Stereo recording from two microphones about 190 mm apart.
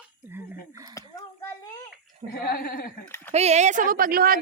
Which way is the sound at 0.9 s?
15° left (ahead or behind).